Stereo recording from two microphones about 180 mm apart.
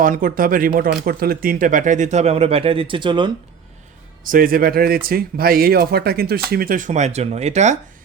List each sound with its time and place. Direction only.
0.0 s speech: 50° right (ahead or behind); by 3.3 s 25° right (ahead or behind)
4.2 s speech: 50° right (ahead or behind)